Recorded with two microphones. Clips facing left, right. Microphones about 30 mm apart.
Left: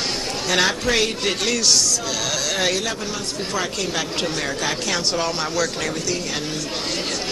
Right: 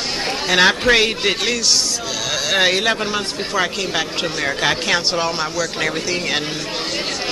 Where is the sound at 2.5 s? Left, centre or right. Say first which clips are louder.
Right 9 dB; right.